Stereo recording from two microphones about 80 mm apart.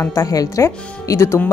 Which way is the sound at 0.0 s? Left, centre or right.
Left.